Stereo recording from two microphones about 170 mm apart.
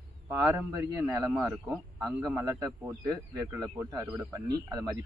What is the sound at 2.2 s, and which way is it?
A man's voice, 20° right (ahead or behind).